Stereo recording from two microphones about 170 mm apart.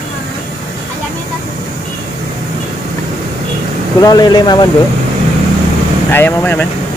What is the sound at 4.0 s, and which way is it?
Speech, 25° left (ahead or behind).